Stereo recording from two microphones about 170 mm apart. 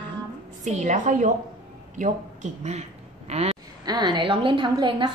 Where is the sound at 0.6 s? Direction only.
45° right (ahead or behind).